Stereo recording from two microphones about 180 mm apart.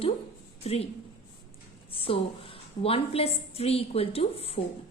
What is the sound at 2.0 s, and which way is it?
A woman's voice, 30° left (ahead or behind).